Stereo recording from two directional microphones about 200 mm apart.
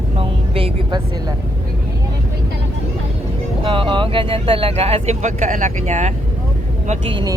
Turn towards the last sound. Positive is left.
turn(degrees=-20)  # may be behind; listen again after turning